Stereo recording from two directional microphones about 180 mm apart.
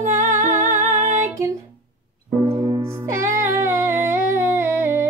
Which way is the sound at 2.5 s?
20° right (ahead or behind).